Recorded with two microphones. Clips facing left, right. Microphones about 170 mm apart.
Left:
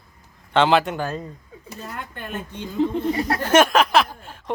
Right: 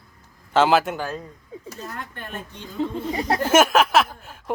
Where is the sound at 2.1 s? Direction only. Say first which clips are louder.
Left 3 dB; 15° left (ahead or behind).